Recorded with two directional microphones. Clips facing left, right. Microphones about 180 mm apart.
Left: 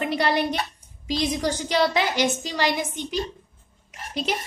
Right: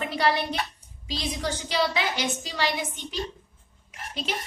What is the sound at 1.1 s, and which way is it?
A woman's voice, 45° left (ahead or behind).